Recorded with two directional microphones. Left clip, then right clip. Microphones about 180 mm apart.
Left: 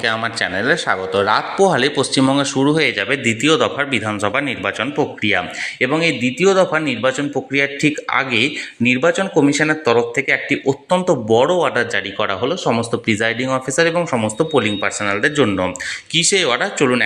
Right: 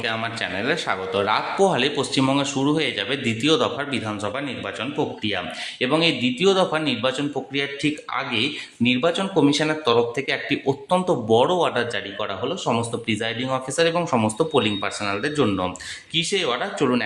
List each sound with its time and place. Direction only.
0.0 s speech: 30° left (ahead or behind); by 3.8 s 15° left (ahead or behind)
4.2 s a man's voice: 30° left (ahead or behind)
13.9 s a man's voice: 5° left (ahead or behind)